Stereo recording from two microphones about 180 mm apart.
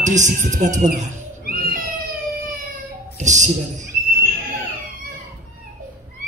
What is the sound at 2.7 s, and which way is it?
Child singing, 40° right (ahead or behind).